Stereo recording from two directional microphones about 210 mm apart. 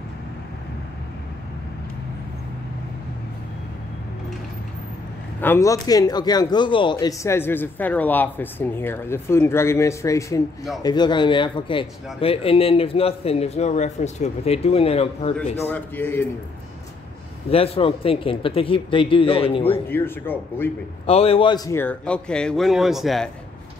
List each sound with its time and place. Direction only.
5.4 s a man's voice: 10° left (ahead or behind); by 15.3 s 30° left (ahead or behind)
15.6 s a man's voice: 10° left (ahead or behind)
17.5 s speech: 25° left (ahead or behind)
19.9 s a man's voice: 10° left (ahead or behind)
21.1 s a man's voice: 25° left (ahead or behind); by 23.3 s centre (ahead or behind)